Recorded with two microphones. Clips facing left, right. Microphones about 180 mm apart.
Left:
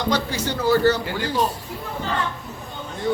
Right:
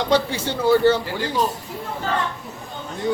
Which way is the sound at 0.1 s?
25° right (ahead or behind).